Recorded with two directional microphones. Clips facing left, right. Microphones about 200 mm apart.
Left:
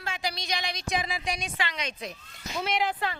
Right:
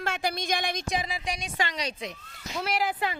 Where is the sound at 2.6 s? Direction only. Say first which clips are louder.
Even; 5° right (ahead or behind).